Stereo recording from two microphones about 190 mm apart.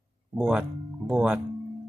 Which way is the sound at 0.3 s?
5° right (ahead or behind).